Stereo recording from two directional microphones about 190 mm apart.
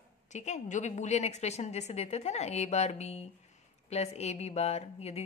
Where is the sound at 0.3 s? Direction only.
40° left (ahead or behind).